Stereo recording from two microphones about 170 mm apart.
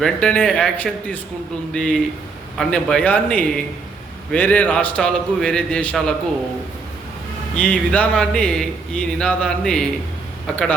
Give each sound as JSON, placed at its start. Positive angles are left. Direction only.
{"t": 0.0, "sound": "a man's voice", "side_deg": 5}
{"t": 7.5, "sound": "speech", "side_deg": 5}